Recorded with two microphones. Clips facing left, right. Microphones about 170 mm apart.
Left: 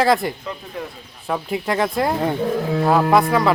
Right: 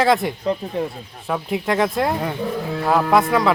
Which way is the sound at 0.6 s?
35° right (ahead or behind).